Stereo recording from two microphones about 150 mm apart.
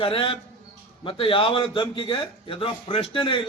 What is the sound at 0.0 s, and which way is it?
A man's voice, 35° left (ahead or behind).